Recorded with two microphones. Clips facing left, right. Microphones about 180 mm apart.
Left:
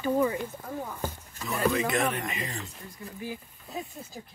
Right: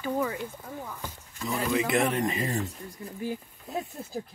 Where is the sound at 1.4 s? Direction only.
15° right (ahead or behind); by 2.6 s 35° right (ahead or behind).